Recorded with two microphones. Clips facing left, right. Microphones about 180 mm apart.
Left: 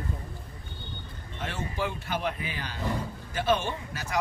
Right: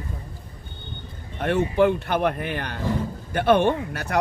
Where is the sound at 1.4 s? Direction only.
60° right (ahead or behind).